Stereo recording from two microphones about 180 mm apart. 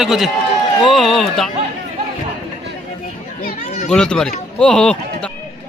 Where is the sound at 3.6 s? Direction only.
40° left (ahead or behind).